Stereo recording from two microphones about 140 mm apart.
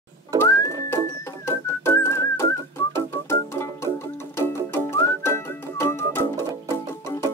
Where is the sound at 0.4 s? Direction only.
20° left (ahead or behind).